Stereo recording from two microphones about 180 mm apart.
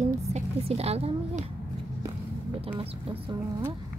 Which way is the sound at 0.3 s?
35° right (ahead or behind).